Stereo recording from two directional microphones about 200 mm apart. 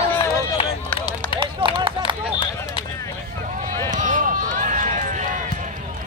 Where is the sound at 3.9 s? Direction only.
40° right (ahead or behind).